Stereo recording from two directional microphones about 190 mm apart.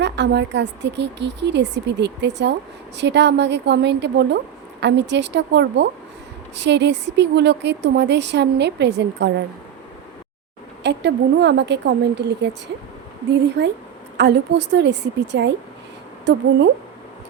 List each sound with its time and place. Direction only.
0.0 s a woman's voice: 65° right (ahead or behind)
10.8 s a woman's voice: 65° right (ahead or behind)
13.6 s a woman's voice: 60° right (ahead or behind)